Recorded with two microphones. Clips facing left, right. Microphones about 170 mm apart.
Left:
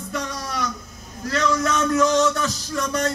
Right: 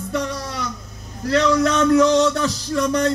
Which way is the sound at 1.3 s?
30° right (ahead or behind).